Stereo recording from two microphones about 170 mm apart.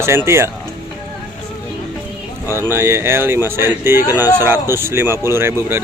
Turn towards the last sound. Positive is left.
turn(degrees=-15)  # may be behind; listen again after turning